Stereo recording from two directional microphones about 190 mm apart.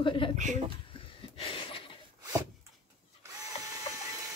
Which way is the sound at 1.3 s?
30° left (ahead or behind).